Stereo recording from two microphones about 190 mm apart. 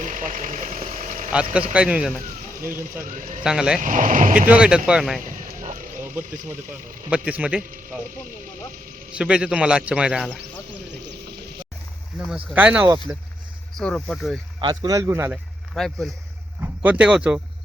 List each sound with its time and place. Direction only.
0.0 s speech: 45° right (ahead or behind)
1.7 s a man's voice: 5° right (ahead or behind)
3.1 s speech: 45° right (ahead or behind)
3.4 s a man's voice: 5° right (ahead or behind)
3.8 s speech: 40° right (ahead or behind)
4.4 s a man's voice: 5° right (ahead or behind)
5.2 s a sound: 45° right (ahead or behind)
7.1 s speech: 5° right (ahead or behind)
9.1 s a man's voice: 5° right (ahead or behind)
12.3 s a man's voice: 5° right (ahead or behind)
14.6 s speech: 20° right (ahead or behind)
15.7 s a man's voice: centre (ahead or behind)